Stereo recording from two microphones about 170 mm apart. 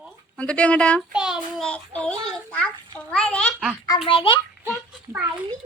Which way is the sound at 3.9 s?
35° left (ahead or behind).